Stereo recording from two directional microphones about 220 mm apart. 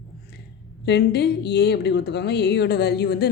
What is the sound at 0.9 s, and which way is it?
A woman's voice, 50° left (ahead or behind).